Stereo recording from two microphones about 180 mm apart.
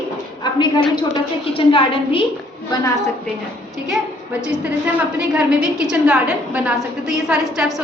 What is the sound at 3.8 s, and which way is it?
A woman's voice, 5° right (ahead or behind).